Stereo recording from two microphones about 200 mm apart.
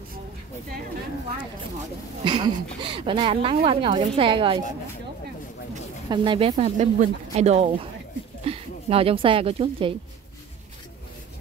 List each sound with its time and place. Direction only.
2.2 s speech: 25° right (ahead or behind)
6.0 s speech: 25° right (ahead or behind)